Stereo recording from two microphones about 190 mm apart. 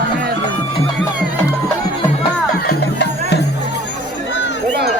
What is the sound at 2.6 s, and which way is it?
Music, 60° left (ahead or behind).